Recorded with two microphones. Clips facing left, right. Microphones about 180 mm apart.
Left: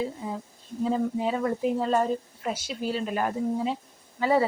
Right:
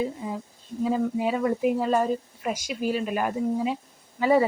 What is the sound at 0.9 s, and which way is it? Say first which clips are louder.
Speech: right 1 dB; 10° right (ahead or behind).